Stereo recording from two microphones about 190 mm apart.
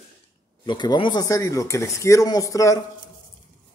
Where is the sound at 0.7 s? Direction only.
25° left (ahead or behind).